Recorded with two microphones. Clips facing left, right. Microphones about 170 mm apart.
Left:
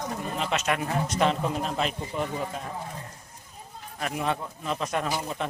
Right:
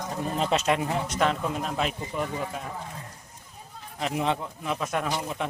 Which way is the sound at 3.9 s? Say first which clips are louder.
Right 2 dB; 20° right (ahead or behind).